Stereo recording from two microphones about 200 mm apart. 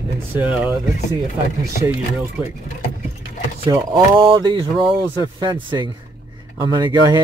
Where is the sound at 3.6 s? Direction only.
15° right (ahead or behind).